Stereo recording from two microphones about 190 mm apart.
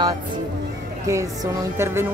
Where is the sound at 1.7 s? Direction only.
15° right (ahead or behind).